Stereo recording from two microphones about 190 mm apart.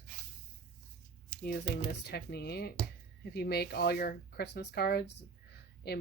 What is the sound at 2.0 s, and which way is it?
Speech, 60° left (ahead or behind).